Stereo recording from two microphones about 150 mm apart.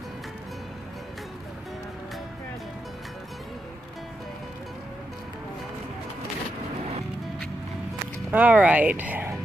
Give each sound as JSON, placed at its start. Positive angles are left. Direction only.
{"t": 8.3, "sound": "speech", "side_deg": -10}